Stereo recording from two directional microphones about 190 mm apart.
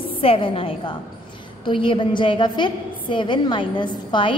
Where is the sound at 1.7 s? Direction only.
25° left (ahead or behind).